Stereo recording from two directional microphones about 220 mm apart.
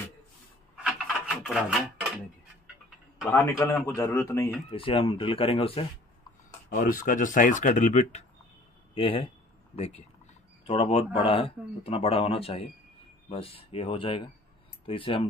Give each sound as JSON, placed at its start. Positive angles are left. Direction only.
{"t": 0.8, "sound": "rub", "side_deg": -5}
{"t": 3.3, "sound": "speech", "side_deg": 15}
{"t": 4.6, "sound": "speech", "side_deg": 25}
{"t": 6.7, "sound": "speech", "side_deg": 40}